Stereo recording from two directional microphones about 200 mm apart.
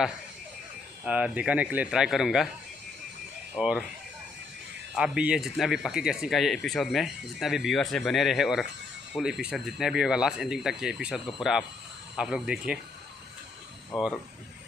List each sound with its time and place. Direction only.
1.0 s speech: 5° right (ahead or behind)
3.5 s speech: 5° right (ahead or behind)
4.9 s speech: 5° right (ahead or behind)
13.9 s speech: centre (ahead or behind)